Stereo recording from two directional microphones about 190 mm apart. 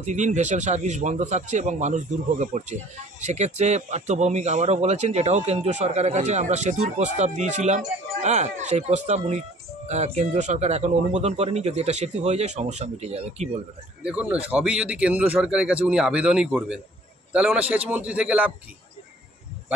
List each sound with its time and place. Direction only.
0.0 s a man's voice: 40° right (ahead or behind)
14.0 s a man's voice: 5° right (ahead or behind)